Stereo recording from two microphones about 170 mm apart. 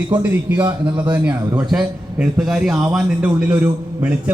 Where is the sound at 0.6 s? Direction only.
25° right (ahead or behind).